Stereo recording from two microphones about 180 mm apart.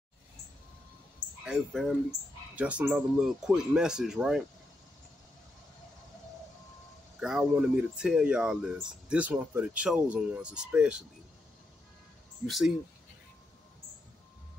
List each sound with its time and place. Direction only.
1.4 s speech: 5° right (ahead or behind)
7.2 s speech: 5° right (ahead or behind)
12.4 s speech: centre (ahead or behind)